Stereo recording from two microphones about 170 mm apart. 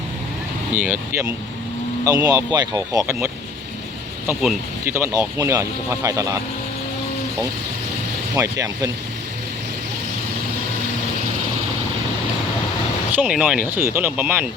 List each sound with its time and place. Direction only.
0.7 s speech: 10° right (ahead or behind)
2.0 s speech: 20° right (ahead or behind)
4.3 s speech: 10° right (ahead or behind)
8.4 s speech: 20° right (ahead or behind)
13.1 s speech: 5° right (ahead or behind)
13.7 s speech: 15° right (ahead or behind)